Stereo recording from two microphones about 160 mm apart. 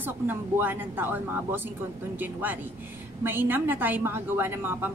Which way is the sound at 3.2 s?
15° right (ahead or behind).